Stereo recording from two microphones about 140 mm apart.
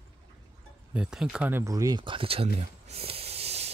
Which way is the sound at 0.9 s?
5° right (ahead or behind).